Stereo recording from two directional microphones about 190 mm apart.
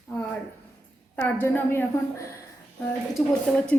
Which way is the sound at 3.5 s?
Centre (ahead or behind).